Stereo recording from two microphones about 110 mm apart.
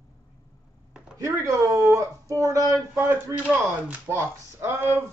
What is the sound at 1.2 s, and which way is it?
Speech, 30° right (ahead or behind).